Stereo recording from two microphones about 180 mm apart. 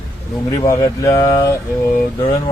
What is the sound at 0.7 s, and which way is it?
Mantra, 20° left (ahead or behind).